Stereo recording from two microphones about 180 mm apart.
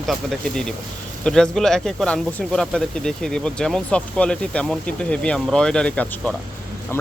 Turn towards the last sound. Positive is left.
turn(degrees=5)  # may be behind; listen again after turning